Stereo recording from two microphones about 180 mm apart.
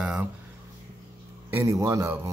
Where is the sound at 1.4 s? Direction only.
15° right (ahead or behind).